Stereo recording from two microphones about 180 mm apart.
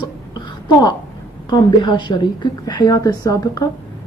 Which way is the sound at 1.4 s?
25° left (ahead or behind).